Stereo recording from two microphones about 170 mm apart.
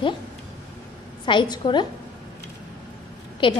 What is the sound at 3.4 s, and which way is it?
Speech, 30° left (ahead or behind).